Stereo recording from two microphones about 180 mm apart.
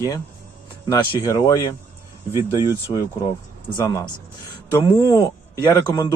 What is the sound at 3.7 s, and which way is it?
Speech, 20° left (ahead or behind).